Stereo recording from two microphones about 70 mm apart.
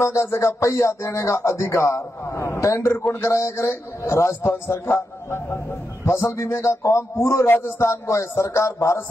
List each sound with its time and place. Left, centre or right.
0.0 s music: left
2.6 s a man's voice: left
7.9 s music: left